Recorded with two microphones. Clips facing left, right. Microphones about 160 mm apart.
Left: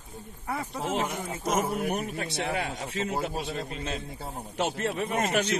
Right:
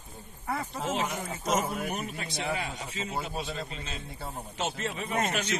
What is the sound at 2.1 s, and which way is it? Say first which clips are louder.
A man's voice: left 3 dB; 60° left (ahead or behind).